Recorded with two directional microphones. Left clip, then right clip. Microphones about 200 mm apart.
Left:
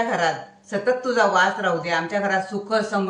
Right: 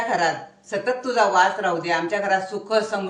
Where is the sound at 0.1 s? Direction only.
40° right (ahead or behind).